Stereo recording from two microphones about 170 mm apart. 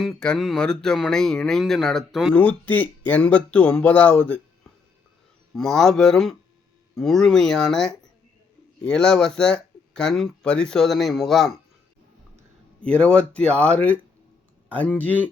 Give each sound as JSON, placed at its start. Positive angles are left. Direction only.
{"t": 0.0, "sound": "speech", "side_deg": 5}
{"t": 12.8, "sound": "speech", "side_deg": 5}